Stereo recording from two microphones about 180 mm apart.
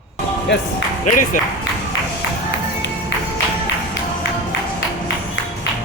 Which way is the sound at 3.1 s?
90° left.